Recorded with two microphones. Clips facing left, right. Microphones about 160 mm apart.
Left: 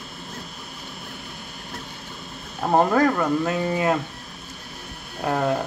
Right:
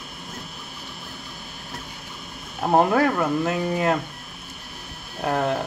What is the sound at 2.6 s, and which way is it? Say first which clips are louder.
Speech: even; 5° right (ahead or behind).